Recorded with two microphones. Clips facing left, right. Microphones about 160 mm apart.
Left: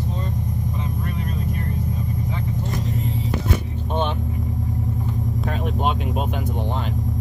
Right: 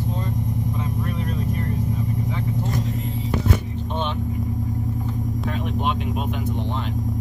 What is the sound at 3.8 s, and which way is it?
Vehicle, 50° left (ahead or behind).